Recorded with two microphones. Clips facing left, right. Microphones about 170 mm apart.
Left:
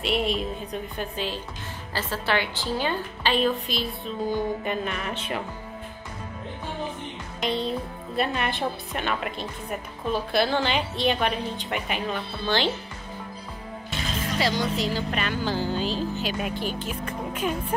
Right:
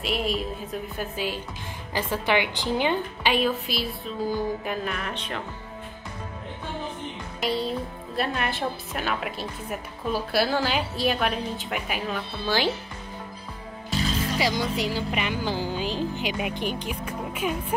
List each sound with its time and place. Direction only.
0.0 s a woman's voice: centre (ahead or behind)
8.2 s a woman's voice: centre (ahead or behind)
14.4 s a woman's voice: 10° right (ahead or behind)